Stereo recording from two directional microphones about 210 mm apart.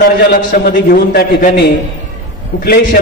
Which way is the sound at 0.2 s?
45° left (ahead or behind).